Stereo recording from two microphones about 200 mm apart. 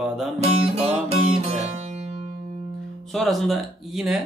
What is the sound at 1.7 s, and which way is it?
Music, 35° right (ahead or behind).